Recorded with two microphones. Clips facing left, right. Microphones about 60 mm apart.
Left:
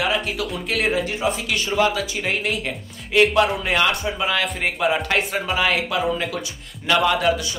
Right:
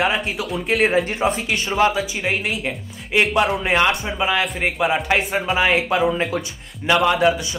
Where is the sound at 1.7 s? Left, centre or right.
Right.